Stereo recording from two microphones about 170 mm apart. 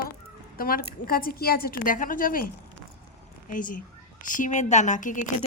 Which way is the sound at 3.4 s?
50° left (ahead or behind).